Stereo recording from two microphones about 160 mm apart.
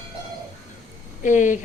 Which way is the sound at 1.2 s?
50° left (ahead or behind).